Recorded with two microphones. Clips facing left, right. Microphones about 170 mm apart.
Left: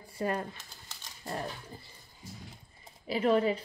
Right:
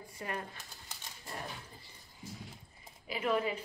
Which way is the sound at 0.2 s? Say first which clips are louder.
Left 8 dB; 35° left (ahead or behind).